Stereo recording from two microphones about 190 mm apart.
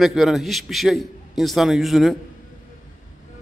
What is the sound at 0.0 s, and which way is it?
A man's voice, centre (ahead or behind).